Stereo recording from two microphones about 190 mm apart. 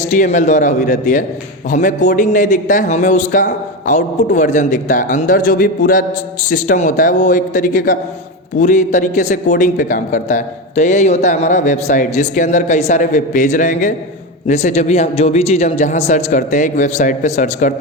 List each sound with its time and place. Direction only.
0.1 s a man's voice: 40° left (ahead or behind)